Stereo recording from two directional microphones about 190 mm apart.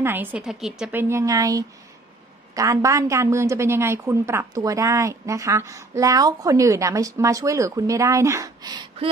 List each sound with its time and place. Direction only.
0.0 s a woman's voice: 10° right (ahead or behind)
1.0 s a woman's voice: 15° right (ahead or behind)